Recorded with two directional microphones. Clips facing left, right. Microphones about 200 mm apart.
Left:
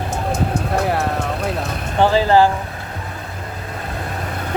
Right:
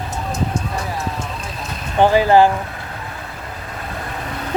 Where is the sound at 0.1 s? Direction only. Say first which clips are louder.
Left 2 dB; 60° left (ahead or behind).